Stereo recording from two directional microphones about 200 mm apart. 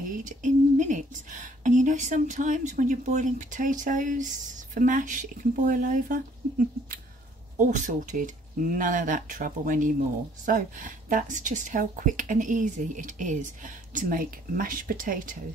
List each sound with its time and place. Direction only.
0.2 s speech: 40° right (ahead or behind)
7.5 s speech: 40° right (ahead or behind)